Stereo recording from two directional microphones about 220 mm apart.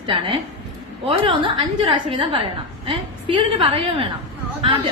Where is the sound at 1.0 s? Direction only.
20° right (ahead or behind).